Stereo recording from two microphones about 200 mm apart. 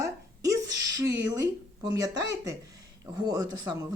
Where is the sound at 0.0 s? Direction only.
15° right (ahead or behind).